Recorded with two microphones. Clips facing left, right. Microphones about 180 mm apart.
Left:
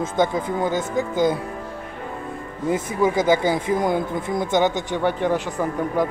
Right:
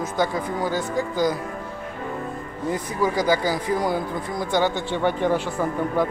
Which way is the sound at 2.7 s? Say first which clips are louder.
Left 3 dB; 20° left (ahead or behind).